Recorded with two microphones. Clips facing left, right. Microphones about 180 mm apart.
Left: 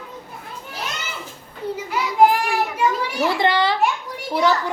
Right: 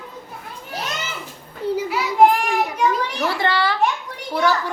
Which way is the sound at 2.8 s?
10° left (ahead or behind).